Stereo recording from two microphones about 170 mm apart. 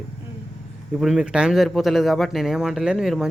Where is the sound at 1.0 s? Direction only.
5° right (ahead or behind).